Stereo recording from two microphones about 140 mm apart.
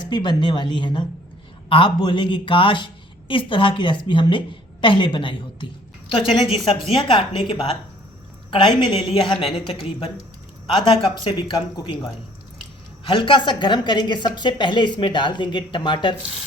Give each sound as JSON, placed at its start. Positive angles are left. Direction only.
{"t": 0.1, "sound": "a woman's voice", "side_deg": 35}
{"t": 6.7, "sound": "a woman's voice", "side_deg": 40}
{"t": 13.1, "sound": "a woman's voice", "side_deg": 35}